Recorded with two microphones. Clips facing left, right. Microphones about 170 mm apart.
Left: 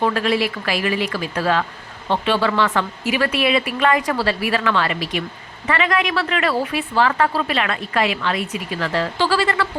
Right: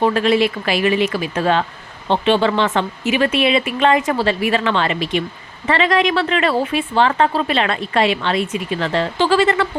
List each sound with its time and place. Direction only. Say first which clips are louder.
0.0 s a woman's voice: right 4 dB; 25° right (ahead or behind)